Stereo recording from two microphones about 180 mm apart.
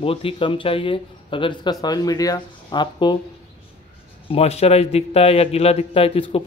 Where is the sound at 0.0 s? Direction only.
30° left (ahead or behind).